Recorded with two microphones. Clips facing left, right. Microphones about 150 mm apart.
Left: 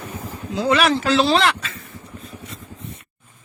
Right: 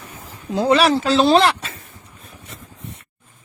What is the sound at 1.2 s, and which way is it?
Speech, 40° right (ahead or behind).